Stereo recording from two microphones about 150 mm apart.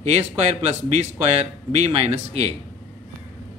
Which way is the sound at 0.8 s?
45° right (ahead or behind).